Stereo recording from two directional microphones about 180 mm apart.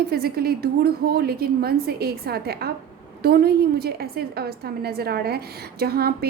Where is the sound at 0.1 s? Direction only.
60° right (ahead or behind).